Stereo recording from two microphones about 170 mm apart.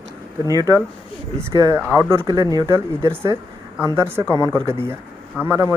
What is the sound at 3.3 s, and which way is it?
Speech, 25° left (ahead or behind).